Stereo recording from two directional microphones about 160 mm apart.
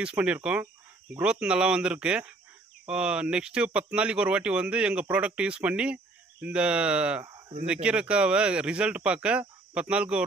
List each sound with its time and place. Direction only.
0.0 s speech: 5° right (ahead or behind)
7.2 s a sound: 25° right (ahead or behind)
7.6 s speech: 5° right (ahead or behind)